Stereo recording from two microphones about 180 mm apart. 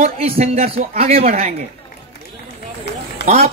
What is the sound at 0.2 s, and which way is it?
A man's voice, 35° right (ahead or behind).